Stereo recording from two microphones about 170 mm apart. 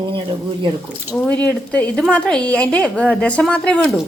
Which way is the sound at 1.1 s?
5° left (ahead or behind).